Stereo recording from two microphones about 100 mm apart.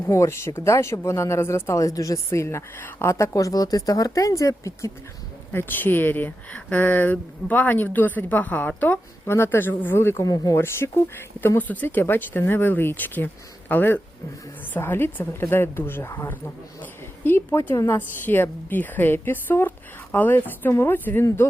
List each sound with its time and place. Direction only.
0.1 s speech: 30° left (ahead or behind)
5.5 s speech: 20° left (ahead or behind); by 10.6 s 35° left (ahead or behind)
10.6 s a woman's voice: 25° left (ahead or behind)